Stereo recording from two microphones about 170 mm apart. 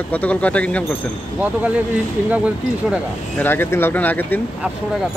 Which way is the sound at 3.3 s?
10° left (ahead or behind).